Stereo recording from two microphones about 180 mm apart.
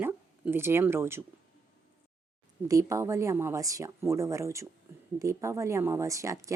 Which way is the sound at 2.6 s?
15° right (ahead or behind).